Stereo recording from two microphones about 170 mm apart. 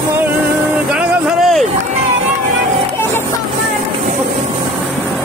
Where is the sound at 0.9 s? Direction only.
5° right (ahead or behind).